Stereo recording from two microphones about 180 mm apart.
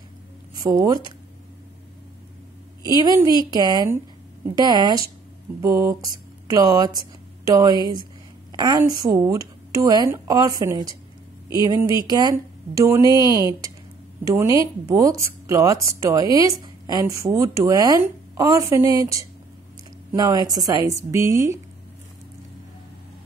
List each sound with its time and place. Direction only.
0.6 s speech: 20° right (ahead or behind)
3.4 s speech: 20° right (ahead or behind)
5.6 s mantra: 15° right (ahead or behind)
7.5 s speech: 20° right (ahead or behind)